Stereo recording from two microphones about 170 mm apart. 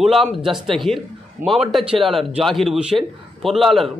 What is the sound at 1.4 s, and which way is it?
Speech, 50° right (ahead or behind).